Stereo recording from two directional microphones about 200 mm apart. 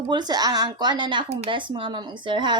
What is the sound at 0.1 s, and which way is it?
Speech, 20° right (ahead or behind).